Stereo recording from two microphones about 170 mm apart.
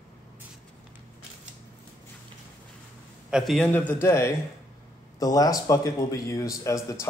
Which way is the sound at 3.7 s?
10° left (ahead or behind).